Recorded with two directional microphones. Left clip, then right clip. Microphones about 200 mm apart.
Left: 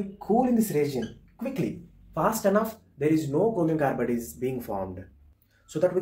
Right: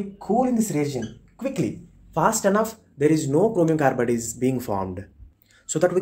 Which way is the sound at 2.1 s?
60° right (ahead or behind).